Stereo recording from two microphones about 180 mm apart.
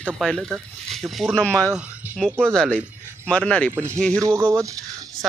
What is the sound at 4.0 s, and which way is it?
Speech, 5° left (ahead or behind).